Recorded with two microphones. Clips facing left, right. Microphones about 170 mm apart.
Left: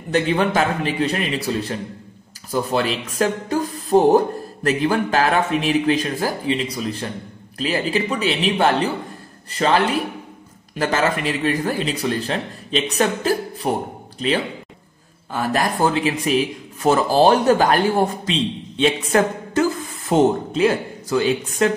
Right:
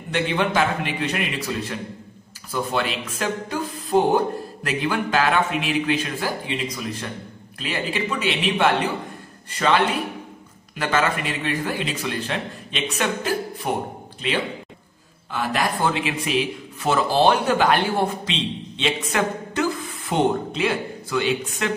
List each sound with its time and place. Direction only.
0.1 s speech: 40° left (ahead or behind)
15.3 s speech: 45° left (ahead or behind)